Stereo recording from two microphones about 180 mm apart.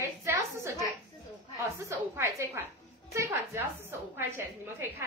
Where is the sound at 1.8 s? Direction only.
15° right (ahead or behind).